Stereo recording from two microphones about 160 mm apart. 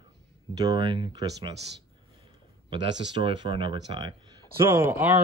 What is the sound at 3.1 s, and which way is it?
Speech, 30° right (ahead or behind).